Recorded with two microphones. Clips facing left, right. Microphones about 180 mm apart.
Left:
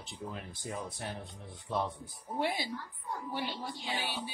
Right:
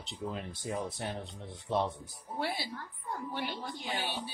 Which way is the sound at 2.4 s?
15° left (ahead or behind).